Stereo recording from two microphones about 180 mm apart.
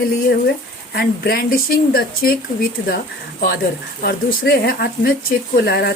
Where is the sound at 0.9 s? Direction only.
55° left (ahead or behind).